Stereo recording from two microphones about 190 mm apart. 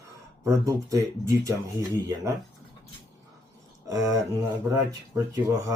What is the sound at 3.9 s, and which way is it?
Speech, 15° right (ahead or behind).